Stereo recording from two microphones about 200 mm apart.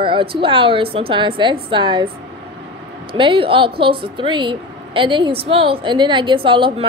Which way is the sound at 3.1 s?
25° right (ahead or behind).